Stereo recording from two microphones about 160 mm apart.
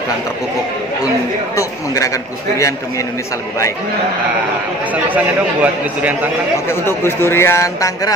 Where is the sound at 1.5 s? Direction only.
20° left (ahead or behind).